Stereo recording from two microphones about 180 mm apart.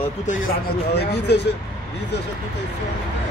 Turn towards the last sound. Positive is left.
turn(degrees=70)  # may be behind; listen again after turning